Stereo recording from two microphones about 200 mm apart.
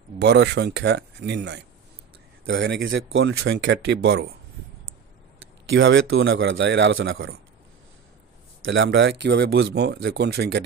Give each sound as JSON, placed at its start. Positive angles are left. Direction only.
{"t": 0.2, "sound": "speech", "side_deg": -55}
{"t": 5.7, "sound": "a man's voice", "side_deg": -70}
{"t": 8.6, "sound": "speech", "side_deg": -75}